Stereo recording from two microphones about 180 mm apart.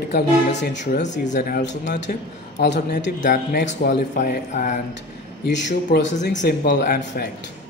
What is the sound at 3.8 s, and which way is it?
Speech, 50° left (ahead or behind).